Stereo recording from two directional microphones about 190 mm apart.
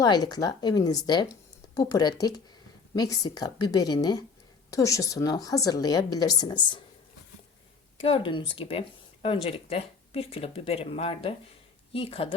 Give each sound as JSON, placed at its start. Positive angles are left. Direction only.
{"t": 0.0, "sound": "speech", "side_deg": 20}
{"t": 8.0, "sound": "speech", "side_deg": 30}